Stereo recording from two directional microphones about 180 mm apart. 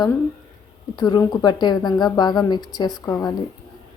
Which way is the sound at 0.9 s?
25° left (ahead or behind).